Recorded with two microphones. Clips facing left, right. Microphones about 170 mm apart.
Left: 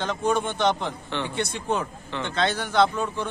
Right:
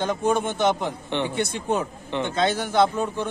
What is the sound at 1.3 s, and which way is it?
Speech, 50° right (ahead or behind).